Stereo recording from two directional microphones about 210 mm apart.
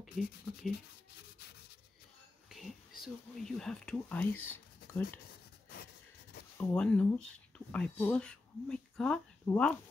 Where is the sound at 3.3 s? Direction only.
Centre (ahead or behind).